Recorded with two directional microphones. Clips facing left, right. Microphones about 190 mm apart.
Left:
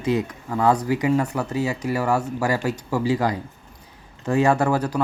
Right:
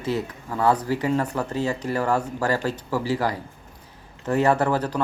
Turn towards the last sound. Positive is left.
turn(degrees=10)  # may be behind; listen again after turning